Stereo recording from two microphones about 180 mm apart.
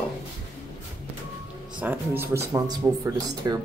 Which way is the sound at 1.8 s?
10° right (ahead or behind).